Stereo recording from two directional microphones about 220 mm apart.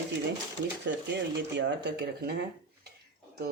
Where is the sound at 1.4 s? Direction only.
50° right (ahead or behind).